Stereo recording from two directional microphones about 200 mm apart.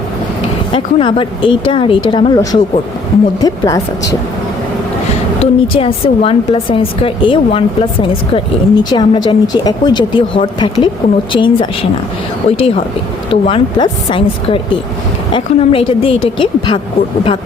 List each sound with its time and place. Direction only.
0.7 s speech: 25° left (ahead or behind)
5.4 s speech: 30° left (ahead or behind)